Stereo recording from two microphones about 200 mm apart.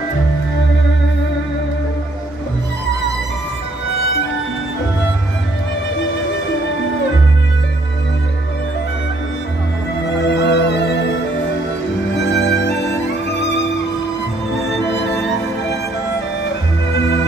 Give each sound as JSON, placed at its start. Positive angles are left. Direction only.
{"t": 10.1, "sound": "music", "side_deg": 60}
{"t": 12.3, "sound": "music", "side_deg": 60}
{"t": 14.8, "sound": "music", "side_deg": 60}
{"t": 16.9, "sound": "music", "side_deg": 60}